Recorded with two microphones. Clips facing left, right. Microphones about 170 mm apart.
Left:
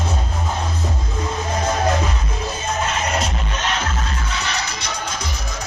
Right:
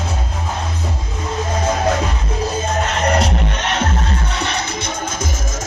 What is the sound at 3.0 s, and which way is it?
Music, 65° right (ahead or behind).